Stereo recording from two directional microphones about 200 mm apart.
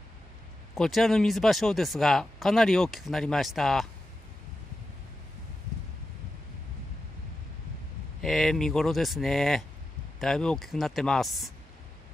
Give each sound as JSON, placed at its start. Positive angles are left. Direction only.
{"t": 0.7, "sound": "speech", "side_deg": 0}
{"t": 8.2, "sound": "speech", "side_deg": 0}